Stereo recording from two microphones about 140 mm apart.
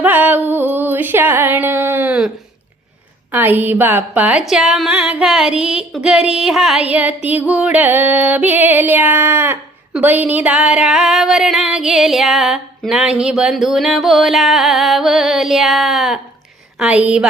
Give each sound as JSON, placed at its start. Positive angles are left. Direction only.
{"t": 0.0, "sound": "music", "side_deg": -15}
{"t": 3.3, "sound": "speech", "side_deg": -15}
{"t": 9.9, "sound": "a sound", "side_deg": -10}
{"t": 16.7, "sound": "speech", "side_deg": -10}